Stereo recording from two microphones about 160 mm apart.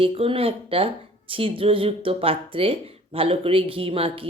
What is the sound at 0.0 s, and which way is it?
Speech, 35° right (ahead or behind).